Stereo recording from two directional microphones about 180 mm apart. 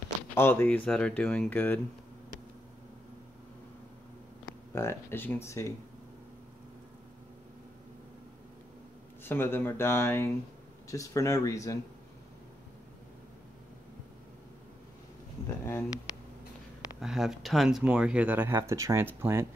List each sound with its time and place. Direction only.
0.3 s speech: 10° left (ahead or behind)
4.7 s speech: 15° left (ahead or behind)
9.2 s speech: 10° left (ahead or behind)
15.4 s a sound: 15° left (ahead or behind)
17.0 s speech: centre (ahead or behind)